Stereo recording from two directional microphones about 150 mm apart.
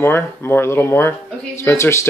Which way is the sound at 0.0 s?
15° left (ahead or behind).